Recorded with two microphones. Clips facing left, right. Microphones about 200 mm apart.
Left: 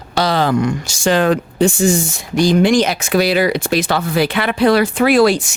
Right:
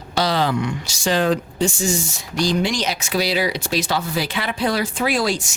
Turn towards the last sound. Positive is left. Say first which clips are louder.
# left 9 dB
turn(degrees=65)  # may be behind; listen again after turning